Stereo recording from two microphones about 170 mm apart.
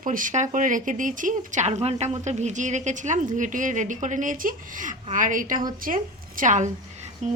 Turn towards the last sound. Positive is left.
turn(degrees=-45)  # may be behind; listen again after turning